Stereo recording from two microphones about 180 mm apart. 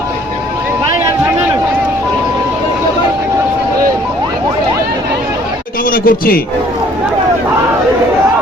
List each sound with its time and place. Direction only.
5.9 s speech: 55° left (ahead or behind)